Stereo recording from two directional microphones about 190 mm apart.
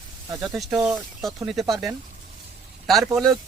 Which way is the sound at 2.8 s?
Centre (ahead or behind).